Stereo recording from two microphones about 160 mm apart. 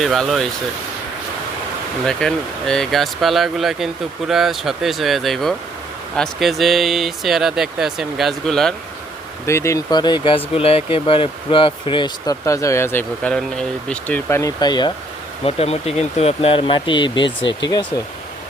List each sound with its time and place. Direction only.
0.0 s speech: centre (ahead or behind)
2.0 s speech: 5° left (ahead or behind)
9.5 s speech: 15° left (ahead or behind)
15.4 s speech: 40° left (ahead or behind)